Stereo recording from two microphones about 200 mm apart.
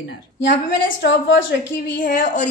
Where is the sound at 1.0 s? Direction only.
65° left (ahead or behind).